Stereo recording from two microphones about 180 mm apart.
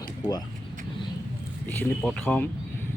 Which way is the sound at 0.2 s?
20° left (ahead or behind).